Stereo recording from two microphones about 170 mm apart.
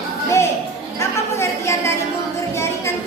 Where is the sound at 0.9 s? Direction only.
15° left (ahead or behind).